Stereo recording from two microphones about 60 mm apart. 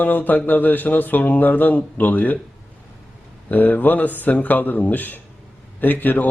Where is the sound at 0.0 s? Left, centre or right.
Left.